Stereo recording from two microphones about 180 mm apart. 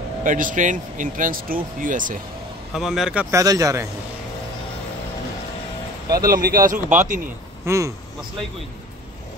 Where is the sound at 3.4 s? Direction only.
20° right (ahead or behind).